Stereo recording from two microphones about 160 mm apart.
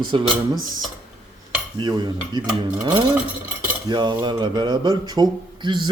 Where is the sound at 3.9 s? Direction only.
25° right (ahead or behind).